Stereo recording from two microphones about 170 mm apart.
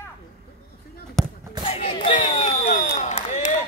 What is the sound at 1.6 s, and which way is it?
Crowd, 35° left (ahead or behind).